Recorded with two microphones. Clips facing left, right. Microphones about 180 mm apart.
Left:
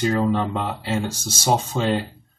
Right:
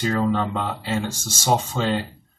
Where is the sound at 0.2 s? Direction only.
15° left (ahead or behind).